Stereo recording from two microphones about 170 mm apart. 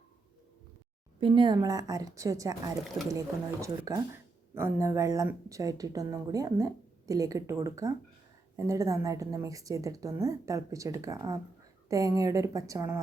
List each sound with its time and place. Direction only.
1.2 s speech: 30° right (ahead or behind)